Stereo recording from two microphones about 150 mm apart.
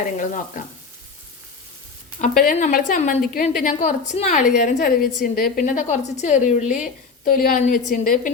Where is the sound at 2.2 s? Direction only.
65° left (ahead or behind); by 4.4 s 50° left (ahead or behind).